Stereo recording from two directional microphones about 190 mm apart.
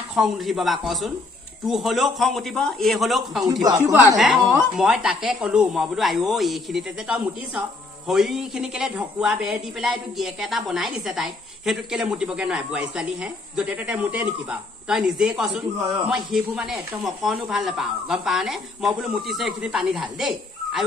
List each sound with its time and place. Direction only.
0.1 s a woman's voice: centre (ahead or behind)
3.6 s speech: 15° right (ahead or behind)
4.7 s a woman's voice: centre (ahead or behind)
15.8 s speech: 20° right (ahead or behind)
16.1 s a woman's voice: centre (ahead or behind)